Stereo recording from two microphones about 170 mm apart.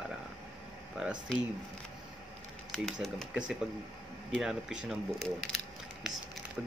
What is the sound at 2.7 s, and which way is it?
Speech, centre (ahead or behind).